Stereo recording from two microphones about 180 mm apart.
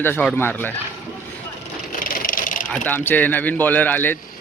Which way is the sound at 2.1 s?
50° left (ahead or behind).